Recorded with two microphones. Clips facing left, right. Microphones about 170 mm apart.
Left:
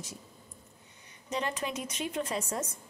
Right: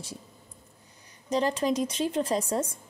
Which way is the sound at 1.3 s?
35° right (ahead or behind).